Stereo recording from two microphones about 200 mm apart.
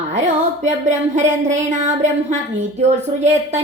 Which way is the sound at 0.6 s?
35° right (ahead or behind).